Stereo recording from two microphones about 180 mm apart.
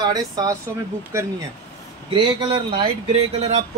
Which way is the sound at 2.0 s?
25° right (ahead or behind).